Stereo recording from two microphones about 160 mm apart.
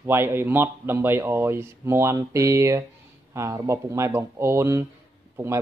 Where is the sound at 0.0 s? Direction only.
15° right (ahead or behind).